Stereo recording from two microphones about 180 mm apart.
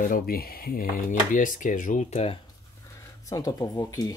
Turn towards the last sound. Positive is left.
turn(degrees=20)  # may be behind; listen again after turning